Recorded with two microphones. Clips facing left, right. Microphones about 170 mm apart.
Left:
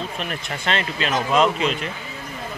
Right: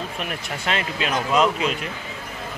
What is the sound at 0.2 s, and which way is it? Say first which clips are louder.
Speech: left 1 dB; 10° right (ahead or behind).